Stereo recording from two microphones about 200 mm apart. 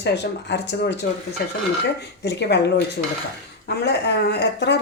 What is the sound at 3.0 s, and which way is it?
Dishes, 45° left (ahead or behind).